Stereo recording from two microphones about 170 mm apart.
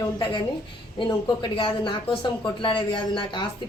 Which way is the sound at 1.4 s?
30° left (ahead or behind).